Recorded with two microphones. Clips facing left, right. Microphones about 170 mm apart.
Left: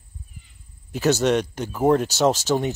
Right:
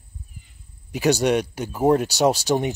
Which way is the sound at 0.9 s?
15° right (ahead or behind).